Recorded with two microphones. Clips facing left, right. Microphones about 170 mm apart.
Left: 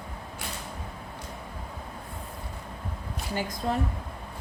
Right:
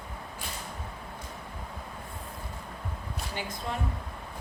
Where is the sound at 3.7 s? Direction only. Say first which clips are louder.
Left 7 dB; 40° left (ahead or behind).